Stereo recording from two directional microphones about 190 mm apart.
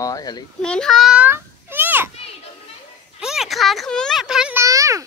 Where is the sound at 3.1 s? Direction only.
Centre (ahead or behind).